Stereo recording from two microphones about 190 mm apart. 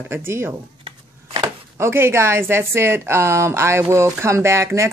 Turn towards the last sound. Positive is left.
turn(degrees=-15)  # may be behind; listen again after turning